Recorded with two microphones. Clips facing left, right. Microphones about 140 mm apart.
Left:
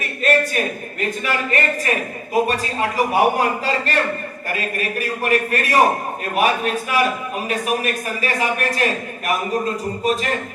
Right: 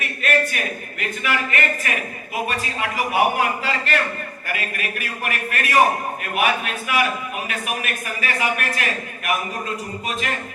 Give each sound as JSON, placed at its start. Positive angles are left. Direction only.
{"t": 0.0, "sound": "speech", "side_deg": 35}